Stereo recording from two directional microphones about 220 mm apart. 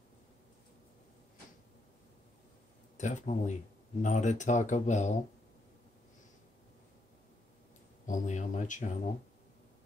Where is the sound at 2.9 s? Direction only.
35° left (ahead or behind).